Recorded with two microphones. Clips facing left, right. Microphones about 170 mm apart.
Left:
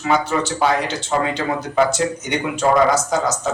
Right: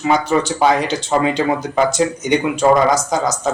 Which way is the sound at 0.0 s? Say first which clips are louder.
Right 3 dB; 15° right (ahead or behind).